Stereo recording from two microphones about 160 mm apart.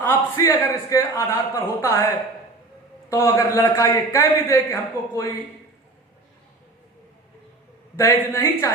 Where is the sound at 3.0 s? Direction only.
20° left (ahead or behind).